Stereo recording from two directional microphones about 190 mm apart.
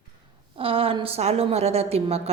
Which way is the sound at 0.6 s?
30° right (ahead or behind).